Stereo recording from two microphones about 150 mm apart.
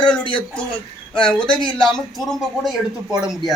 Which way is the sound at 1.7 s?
5° left (ahead or behind).